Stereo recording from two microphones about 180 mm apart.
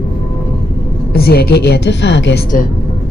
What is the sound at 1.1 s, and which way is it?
A woman's voice, 60° left (ahead or behind).